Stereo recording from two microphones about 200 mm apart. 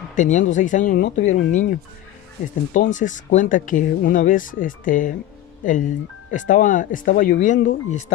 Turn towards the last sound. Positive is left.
turn(degrees=40)  # may be behind; listen again after turning